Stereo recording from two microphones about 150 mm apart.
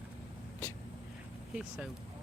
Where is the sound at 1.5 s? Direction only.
5° right (ahead or behind).